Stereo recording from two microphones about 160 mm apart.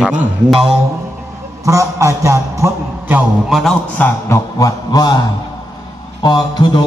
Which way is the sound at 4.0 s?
20° left (ahead or behind).